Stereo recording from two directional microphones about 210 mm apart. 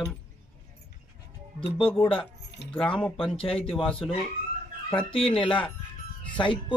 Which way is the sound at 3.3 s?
25° left (ahead or behind).